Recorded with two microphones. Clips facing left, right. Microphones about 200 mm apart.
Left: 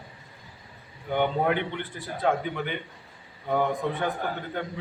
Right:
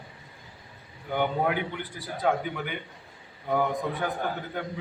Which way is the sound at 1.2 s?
5° right (ahead or behind).